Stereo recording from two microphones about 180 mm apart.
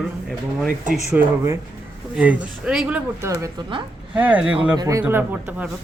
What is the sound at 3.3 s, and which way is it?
Speech, 15° right (ahead or behind).